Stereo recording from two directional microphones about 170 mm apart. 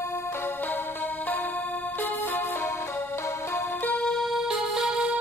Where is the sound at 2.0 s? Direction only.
10° left (ahead or behind).